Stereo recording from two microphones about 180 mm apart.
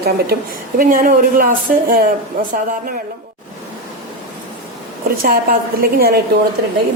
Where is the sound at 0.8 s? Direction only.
50° right (ahead or behind).